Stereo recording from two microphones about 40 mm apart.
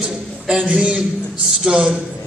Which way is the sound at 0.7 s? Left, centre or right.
Right.